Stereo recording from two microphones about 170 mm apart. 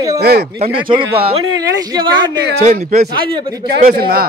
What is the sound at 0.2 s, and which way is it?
Speech, 70° right (ahead or behind).